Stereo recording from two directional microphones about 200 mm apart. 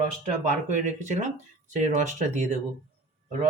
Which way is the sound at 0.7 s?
35° right (ahead or behind).